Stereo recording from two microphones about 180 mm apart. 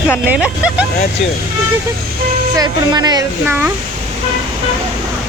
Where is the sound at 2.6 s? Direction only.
20° right (ahead or behind).